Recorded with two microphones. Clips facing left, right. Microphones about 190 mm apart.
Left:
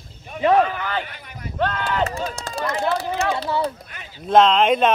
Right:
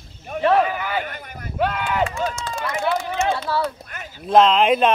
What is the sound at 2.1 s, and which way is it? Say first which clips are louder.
Speech: right 2 dB; 35° left (ahead or behind).